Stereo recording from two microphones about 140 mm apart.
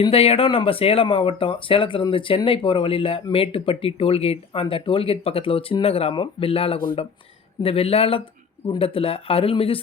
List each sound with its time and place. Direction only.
0.0 s speech: 45° left (ahead or behind)